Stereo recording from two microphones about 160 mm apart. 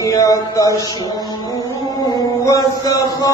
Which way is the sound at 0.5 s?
20° left (ahead or behind).